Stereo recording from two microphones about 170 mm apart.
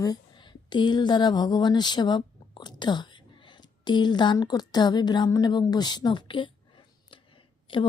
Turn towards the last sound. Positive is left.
turn(degrees=30)  # may be behind; listen again after turning